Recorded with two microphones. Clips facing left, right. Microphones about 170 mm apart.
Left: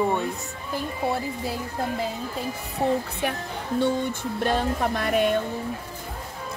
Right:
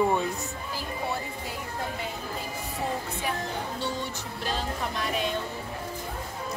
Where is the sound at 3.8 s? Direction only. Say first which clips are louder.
Left 8 dB; 50° left (ahead or behind).